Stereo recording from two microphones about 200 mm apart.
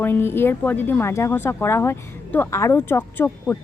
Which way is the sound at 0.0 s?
10° left (ahead or behind).